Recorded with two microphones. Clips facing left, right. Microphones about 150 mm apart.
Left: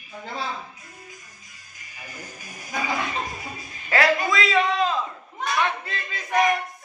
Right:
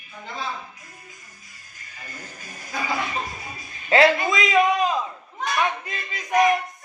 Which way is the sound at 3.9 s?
20° right (ahead or behind).